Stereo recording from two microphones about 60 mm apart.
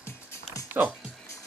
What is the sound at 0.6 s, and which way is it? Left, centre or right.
Music, right.